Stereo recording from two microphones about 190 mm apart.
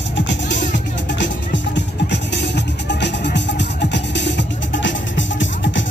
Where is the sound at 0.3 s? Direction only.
70° left (ahead or behind).